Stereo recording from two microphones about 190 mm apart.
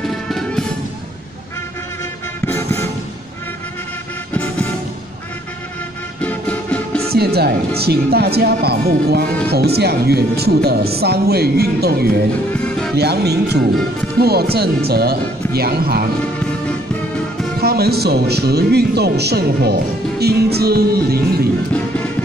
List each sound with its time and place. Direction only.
0.0 s music: centre (ahead or behind)
2.4 s vehicle: 15° left (ahead or behind)
4.3 s music: 5° left (ahead or behind)
6.2 s music: 10° left (ahead or behind)
7.1 s speech: 55° right (ahead or behind)
12.5 s music: 5° left (ahead or behind)
12.9 s speech: 60° right (ahead or behind)
16.3 s music: 5° left (ahead or behind)
17.6 s speech: 55° right (ahead or behind)